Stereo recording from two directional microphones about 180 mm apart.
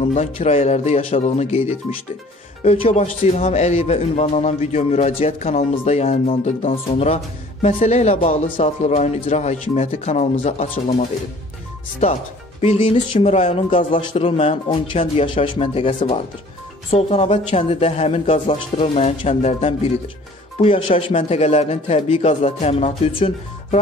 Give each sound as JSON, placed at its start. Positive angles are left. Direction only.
{"t": 0.1, "sound": "speech", "side_deg": 40}
{"t": 2.6, "sound": "speech", "side_deg": 35}